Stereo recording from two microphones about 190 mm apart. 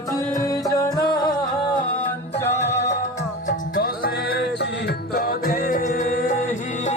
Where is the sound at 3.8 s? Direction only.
55° left (ahead or behind).